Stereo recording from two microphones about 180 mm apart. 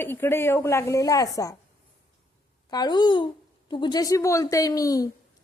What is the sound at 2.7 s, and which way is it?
Speech, 25° left (ahead or behind).